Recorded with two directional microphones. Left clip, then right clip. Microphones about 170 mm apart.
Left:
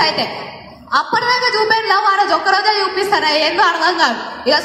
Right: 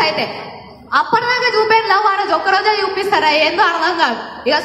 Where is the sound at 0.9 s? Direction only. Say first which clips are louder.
Even; 30° right (ahead or behind).